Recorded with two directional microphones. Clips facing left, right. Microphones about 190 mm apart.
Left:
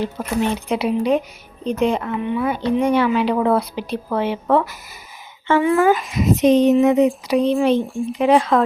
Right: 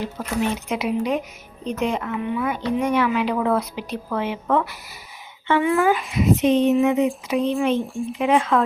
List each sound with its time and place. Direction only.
0.4 s a woman's voice: 30° left (ahead or behind)
7.8 s speech: centre (ahead or behind)
8.2 s a woman's voice: 35° left (ahead or behind)